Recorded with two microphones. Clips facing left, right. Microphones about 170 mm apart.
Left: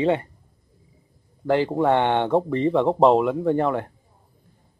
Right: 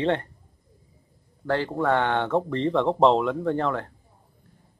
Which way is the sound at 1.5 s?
15° left (ahead or behind).